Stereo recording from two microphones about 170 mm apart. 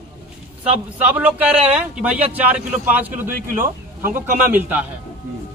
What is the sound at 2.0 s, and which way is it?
Speech, 10° right (ahead or behind).